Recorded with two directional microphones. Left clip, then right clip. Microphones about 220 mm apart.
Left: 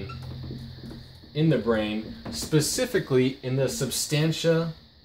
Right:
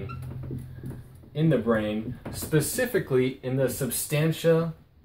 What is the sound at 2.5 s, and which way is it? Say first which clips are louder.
Speech: left 1 dB; 35° left (ahead or behind).